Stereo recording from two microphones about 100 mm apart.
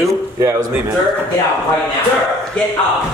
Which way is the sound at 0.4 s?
30° right (ahead or behind).